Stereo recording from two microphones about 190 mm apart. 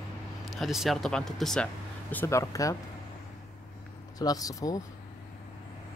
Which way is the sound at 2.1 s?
15° left (ahead or behind).